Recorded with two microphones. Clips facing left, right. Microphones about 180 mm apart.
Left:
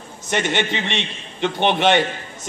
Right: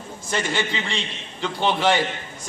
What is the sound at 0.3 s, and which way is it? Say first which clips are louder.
A man's voice: left 4 dB; 20° left (ahead or behind).